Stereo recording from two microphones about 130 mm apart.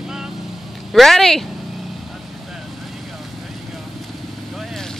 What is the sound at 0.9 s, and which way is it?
Speech, centre (ahead or behind).